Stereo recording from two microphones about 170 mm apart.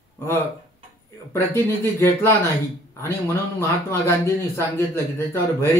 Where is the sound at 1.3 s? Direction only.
15° left (ahead or behind).